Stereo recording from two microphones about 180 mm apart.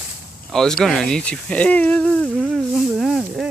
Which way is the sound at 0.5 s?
Centre (ahead or behind).